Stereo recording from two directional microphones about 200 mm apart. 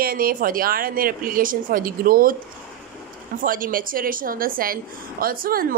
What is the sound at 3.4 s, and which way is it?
Speech, 45° right (ahead or behind).